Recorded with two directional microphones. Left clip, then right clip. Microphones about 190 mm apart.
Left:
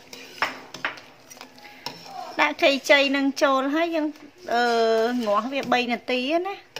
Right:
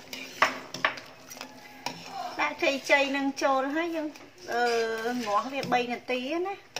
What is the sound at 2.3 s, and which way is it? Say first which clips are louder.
Speech: left 8 dB; 55° left (ahead or behind).